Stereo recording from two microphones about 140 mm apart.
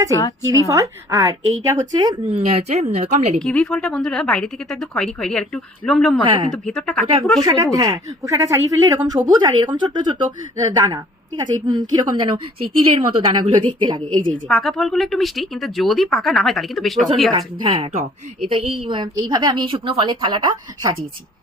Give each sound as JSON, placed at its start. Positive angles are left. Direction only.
{"t": 0.7, "sound": "a woman's voice", "side_deg": -25}
{"t": 2.2, "sound": "a woman's voice", "side_deg": -50}
{"t": 3.4, "sound": "speech", "side_deg": 5}
{"t": 6.2, "sound": "a woman's voice", "side_deg": -35}
{"t": 6.5, "sound": "speech", "side_deg": 5}
{"t": 7.4, "sound": "a woman's voice", "side_deg": -25}
{"t": 14.4, "sound": "speech", "side_deg": 0}
{"t": 17.3, "sound": "a woman's voice", "side_deg": -40}